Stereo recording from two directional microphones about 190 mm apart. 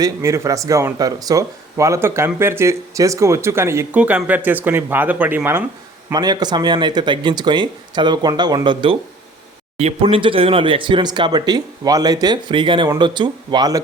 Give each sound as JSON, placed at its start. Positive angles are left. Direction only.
{"t": 0.0, "sound": "speech", "side_deg": -15}
{"t": 6.1, "sound": "speech", "side_deg": -20}